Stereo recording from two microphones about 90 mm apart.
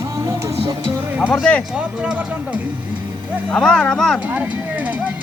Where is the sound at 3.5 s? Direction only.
10° left (ahead or behind).